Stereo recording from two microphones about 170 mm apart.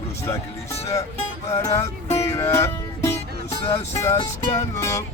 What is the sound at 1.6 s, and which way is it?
Music, 15° left (ahead or behind).